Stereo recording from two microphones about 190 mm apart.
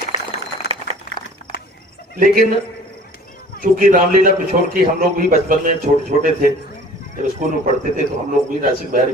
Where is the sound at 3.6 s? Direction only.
45° right (ahead or behind).